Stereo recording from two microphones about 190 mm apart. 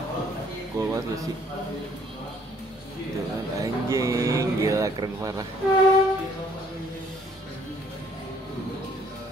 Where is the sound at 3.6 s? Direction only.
15° right (ahead or behind).